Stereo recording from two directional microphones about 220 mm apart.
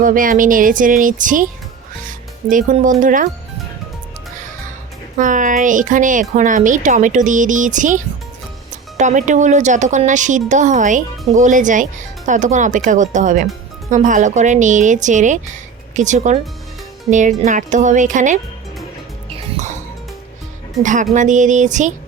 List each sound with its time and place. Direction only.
0.0 s speech: 40° right (ahead or behind)
2.0 s music: 35° right (ahead or behind)
3.0 s speech: 35° right (ahead or behind)
5.1 s speech: 35° right (ahead or behind)
19.4 s music: 35° right (ahead or behind)
20.8 s speech: 35° right (ahead or behind)